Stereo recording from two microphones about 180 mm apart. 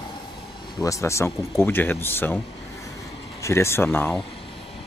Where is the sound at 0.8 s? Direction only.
15° left (ahead or behind).